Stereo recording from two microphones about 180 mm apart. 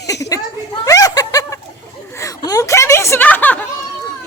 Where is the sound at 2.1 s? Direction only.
15° left (ahead or behind).